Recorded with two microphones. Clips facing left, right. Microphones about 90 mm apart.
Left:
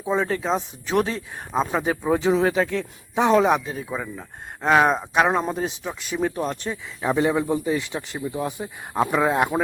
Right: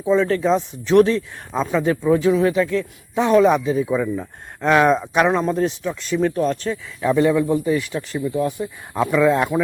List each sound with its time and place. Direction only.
0.0 s speech: 15° left (ahead or behind)
0.4 s speech: 5° left (ahead or behind)
2.0 s speech: 25° left (ahead or behind)
3.6 s speech: centre (ahead or behind); by 9.6 s 20° left (ahead or behind)